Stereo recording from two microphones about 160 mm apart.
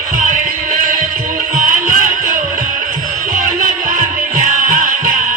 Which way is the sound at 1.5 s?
55° right (ahead or behind).